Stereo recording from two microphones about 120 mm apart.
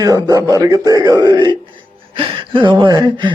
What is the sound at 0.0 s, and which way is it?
Speech, 30° right (ahead or behind).